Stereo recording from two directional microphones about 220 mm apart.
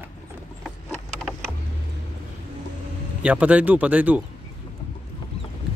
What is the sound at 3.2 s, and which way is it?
Speech, 5° right (ahead or behind).